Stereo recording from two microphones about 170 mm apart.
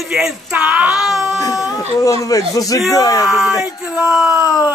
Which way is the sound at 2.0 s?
20° left (ahead or behind).